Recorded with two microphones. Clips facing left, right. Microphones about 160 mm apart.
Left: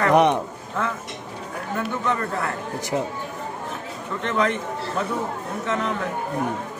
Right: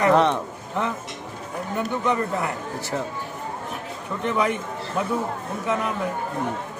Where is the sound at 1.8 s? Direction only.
15° right (ahead or behind).